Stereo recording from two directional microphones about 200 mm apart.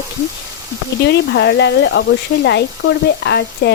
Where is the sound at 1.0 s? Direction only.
60° left (ahead or behind).